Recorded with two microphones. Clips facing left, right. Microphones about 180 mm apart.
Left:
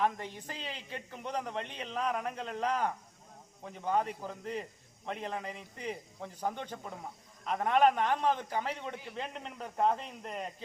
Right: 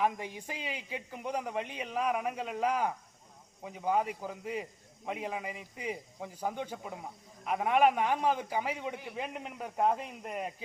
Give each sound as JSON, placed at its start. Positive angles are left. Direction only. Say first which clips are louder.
{"t": 0.0, "sound": "a man's voice", "louder": "right 1 dB", "side_deg": -10}